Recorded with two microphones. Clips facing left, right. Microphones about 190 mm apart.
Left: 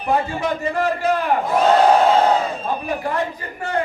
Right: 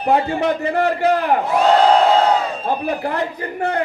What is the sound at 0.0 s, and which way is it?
A man's voice, 65° right (ahead or behind).